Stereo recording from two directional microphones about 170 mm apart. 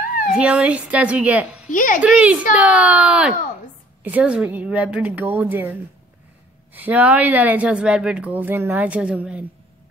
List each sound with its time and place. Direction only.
0.3 s a woman's voice: 5° right (ahead or behind)
1.7 s a child's voice: 50° left (ahead or behind)
2.0 s a woman's voice: 5° right (ahead or behind)